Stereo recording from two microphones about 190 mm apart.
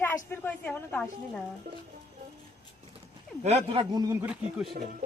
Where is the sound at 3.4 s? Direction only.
35° right (ahead or behind).